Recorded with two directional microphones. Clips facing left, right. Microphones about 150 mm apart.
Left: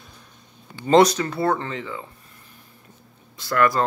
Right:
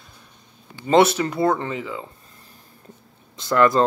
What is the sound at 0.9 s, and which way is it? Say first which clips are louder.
Speech: left 1 dB; 5° right (ahead or behind).